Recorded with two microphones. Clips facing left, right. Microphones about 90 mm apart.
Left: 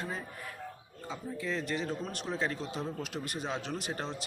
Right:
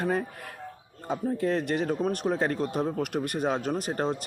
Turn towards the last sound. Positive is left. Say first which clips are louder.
# right 9 dB
turn(degrees=-45)  # may be behind; listen again after turning